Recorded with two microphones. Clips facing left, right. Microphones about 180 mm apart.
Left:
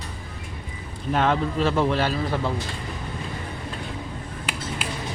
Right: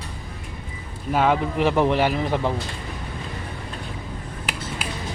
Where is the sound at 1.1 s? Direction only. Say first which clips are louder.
Right 2 dB; 10° right (ahead or behind).